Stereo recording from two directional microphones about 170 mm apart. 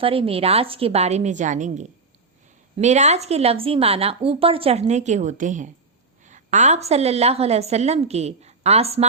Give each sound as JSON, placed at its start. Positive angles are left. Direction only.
{"t": 0.0, "sound": "a woman's voice", "side_deg": -35}